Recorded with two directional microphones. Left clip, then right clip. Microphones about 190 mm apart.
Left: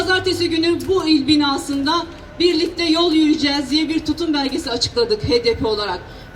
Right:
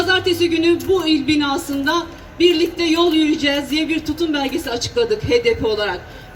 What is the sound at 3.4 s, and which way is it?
Speech, 25° left (ahead or behind).